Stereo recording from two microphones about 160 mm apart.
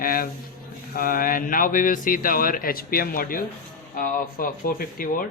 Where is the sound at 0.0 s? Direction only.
65° left (ahead or behind).